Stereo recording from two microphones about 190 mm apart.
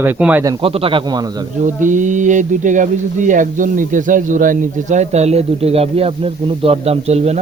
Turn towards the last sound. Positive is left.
turn(degrees=-35)  # may be behind; listen again after turning